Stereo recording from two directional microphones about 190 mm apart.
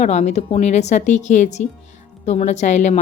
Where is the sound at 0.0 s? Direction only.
35° left (ahead or behind).